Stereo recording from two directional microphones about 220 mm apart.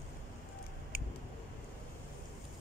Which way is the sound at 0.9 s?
40° right (ahead or behind).